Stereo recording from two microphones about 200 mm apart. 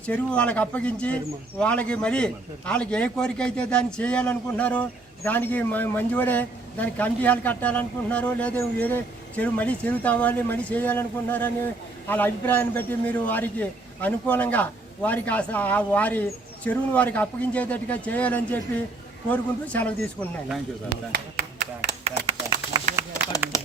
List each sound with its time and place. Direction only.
0.0 s speech: 5° left (ahead or behind)
21.1 s speech: 45° right (ahead or behind)
22.3 s a sound: 20° right (ahead or behind)